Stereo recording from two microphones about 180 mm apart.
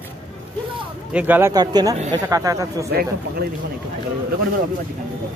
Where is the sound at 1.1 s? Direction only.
10° right (ahead or behind).